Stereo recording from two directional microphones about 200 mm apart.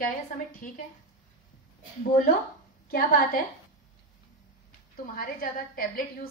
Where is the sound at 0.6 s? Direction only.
45° left (ahead or behind).